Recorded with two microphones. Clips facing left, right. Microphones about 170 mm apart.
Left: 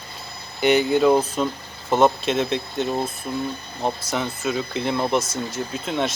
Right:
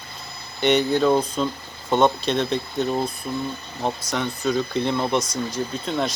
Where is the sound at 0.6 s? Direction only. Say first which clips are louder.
Left 1 dB; 5° left (ahead or behind).